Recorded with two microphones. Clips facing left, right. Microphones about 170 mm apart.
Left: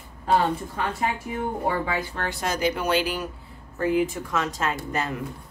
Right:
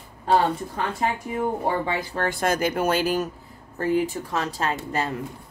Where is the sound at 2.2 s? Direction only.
50° right (ahead or behind).